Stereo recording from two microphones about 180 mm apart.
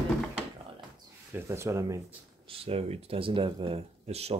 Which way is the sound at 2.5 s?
30° right (ahead or behind).